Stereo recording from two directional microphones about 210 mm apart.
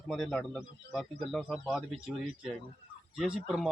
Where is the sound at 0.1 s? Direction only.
Centre (ahead or behind).